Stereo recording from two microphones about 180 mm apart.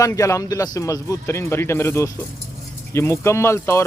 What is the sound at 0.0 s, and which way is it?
A man's voice, 15° left (ahead or behind).